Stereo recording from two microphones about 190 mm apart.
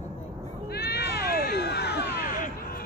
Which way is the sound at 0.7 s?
60° left (ahead or behind).